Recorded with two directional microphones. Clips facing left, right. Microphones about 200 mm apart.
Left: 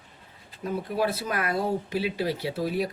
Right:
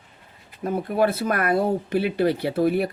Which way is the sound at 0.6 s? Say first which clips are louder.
Right 5 dB; 55° right (ahead or behind).